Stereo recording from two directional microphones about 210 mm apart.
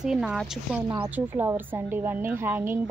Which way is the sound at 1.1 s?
10° right (ahead or behind).